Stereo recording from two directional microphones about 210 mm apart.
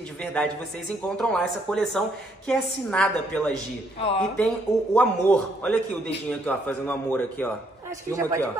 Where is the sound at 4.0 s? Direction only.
30° left (ahead or behind).